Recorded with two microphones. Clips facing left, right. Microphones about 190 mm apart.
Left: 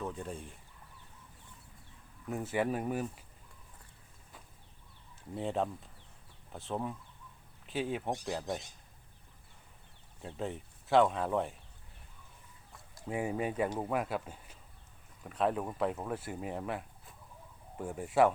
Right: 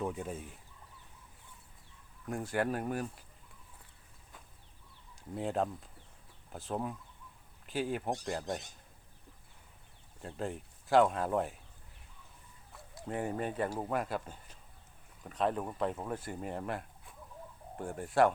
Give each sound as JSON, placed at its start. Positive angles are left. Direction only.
{"t": 0.0, "sound": "speech", "side_deg": -10}
{"t": 2.3, "sound": "speech", "side_deg": 5}
{"t": 5.3, "sound": "speech", "side_deg": 0}
{"t": 10.2, "sound": "speech", "side_deg": 0}
{"t": 12.7, "sound": "speech", "side_deg": 5}